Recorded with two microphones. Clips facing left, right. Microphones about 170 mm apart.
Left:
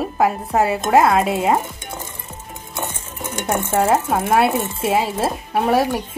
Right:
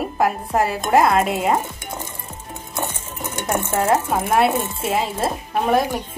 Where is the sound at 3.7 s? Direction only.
Centre (ahead or behind).